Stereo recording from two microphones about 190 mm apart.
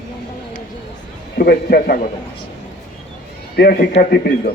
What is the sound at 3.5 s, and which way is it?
Speech, 50° left (ahead or behind).